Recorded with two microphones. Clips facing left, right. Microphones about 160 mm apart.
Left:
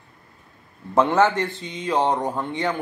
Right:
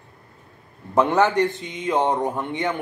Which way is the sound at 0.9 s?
15° right (ahead or behind).